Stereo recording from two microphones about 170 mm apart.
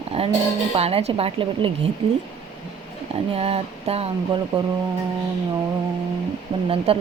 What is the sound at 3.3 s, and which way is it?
Speech, 35° right (ahead or behind).